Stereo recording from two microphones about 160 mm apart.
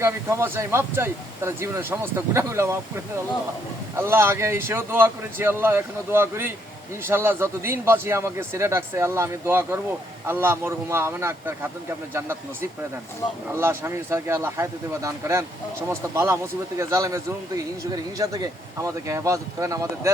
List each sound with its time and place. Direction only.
0.0 s speech: 15° right (ahead or behind)
3.9 s speech: 15° right (ahead or behind)
13.5 s speech: 15° right (ahead or behind)